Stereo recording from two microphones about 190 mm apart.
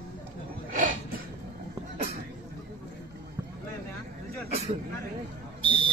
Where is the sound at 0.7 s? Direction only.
45° right (ahead or behind).